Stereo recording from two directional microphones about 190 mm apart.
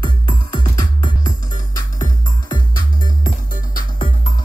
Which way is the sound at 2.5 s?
20° left (ahead or behind).